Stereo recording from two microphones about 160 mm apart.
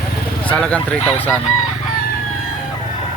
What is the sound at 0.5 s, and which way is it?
Speech, 5° left (ahead or behind).